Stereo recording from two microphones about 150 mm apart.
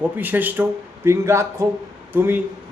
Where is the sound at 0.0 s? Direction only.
10° right (ahead or behind).